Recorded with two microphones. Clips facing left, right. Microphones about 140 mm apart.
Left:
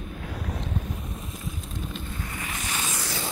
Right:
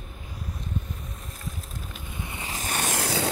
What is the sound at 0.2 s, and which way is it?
Boat, 75° left (ahead or behind).